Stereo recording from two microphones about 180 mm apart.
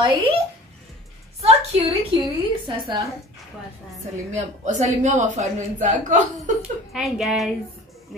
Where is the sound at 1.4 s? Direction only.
35° right (ahead or behind).